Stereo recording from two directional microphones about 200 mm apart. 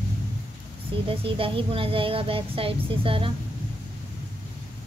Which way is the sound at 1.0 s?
25° right (ahead or behind).